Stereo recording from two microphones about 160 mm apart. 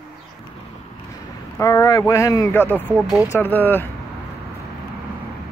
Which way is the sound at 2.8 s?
10° right (ahead or behind).